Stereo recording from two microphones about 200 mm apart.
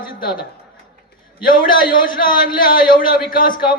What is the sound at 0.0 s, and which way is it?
Speech, 45° left (ahead or behind).